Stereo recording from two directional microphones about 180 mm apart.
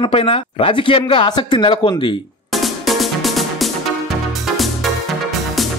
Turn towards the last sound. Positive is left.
turn(degrees=0)  # may be behind; listen again after turning